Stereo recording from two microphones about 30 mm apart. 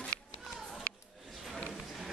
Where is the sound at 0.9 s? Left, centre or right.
Left.